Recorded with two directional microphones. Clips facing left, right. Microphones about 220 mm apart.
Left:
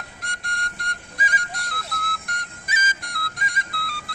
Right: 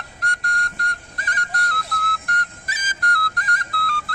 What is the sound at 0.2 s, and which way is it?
Music, centre (ahead or behind).